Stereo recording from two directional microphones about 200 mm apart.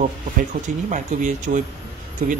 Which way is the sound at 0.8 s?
40° right (ahead or behind).